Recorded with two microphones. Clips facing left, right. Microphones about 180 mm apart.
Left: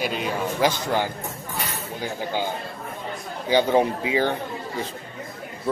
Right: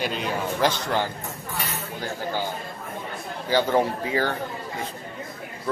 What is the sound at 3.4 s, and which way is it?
Speech, 15° left (ahead or behind).